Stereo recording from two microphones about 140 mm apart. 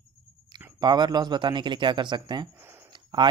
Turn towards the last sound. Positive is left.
turn(degrees=-35)  # may be behind; listen again after turning